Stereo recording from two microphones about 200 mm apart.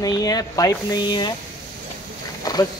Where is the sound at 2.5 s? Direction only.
20° left (ahead or behind).